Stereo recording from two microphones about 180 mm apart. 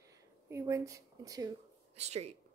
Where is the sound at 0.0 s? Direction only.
15° right (ahead or behind).